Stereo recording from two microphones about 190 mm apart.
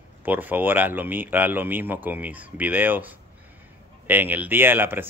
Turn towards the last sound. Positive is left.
turn(degrees=-10)  # may be behind; listen again after turning